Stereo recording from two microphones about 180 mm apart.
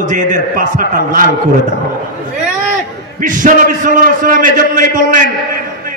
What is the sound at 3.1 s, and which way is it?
A man's voice, 50° right (ahead or behind).